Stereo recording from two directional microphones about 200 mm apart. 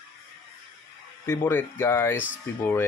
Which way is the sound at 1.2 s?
10° left (ahead or behind).